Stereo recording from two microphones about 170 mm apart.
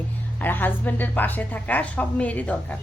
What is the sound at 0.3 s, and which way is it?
A woman's voice, 10° left (ahead or behind).